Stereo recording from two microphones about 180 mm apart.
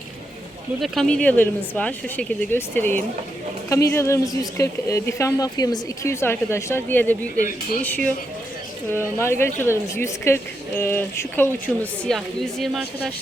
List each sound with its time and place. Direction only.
0.8 s a woman's voice: 5° left (ahead or behind)
7.3 s speech: 50° left (ahead or behind)
7.8 s a woman's voice: 10° left (ahead or behind)